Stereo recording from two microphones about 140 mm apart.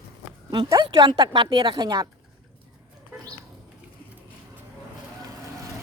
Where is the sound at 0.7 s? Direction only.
30° right (ahead or behind).